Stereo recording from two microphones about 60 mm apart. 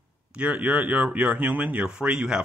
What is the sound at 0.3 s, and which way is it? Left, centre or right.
Speech, centre.